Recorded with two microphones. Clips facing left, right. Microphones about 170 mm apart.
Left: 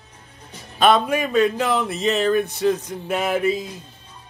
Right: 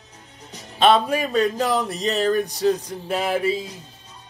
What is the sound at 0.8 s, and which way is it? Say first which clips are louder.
Speech: even; 30° right (ahead or behind).